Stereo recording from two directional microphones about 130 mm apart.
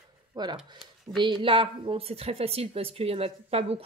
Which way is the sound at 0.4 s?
35° right (ahead or behind).